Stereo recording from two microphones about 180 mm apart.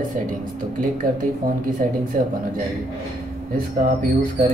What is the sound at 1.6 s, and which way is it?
Speech, 50° right (ahead or behind).